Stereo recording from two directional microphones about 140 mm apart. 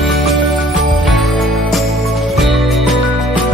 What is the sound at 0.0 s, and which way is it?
Music, centre (ahead or behind).